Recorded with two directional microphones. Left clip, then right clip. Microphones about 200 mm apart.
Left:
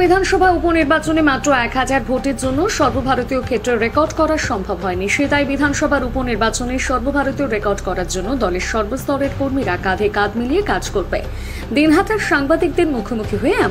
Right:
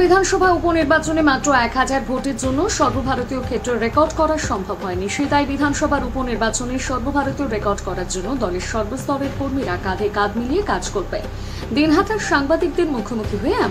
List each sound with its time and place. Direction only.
0.0 s a woman's voice: centre (ahead or behind)
9.7 s a woman's voice: 10° left (ahead or behind)